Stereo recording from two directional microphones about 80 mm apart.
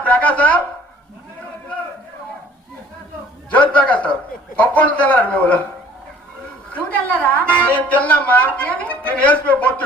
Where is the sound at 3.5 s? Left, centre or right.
Centre.